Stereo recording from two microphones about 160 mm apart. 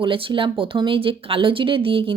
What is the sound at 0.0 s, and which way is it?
A woman's voice, 35° right (ahead or behind).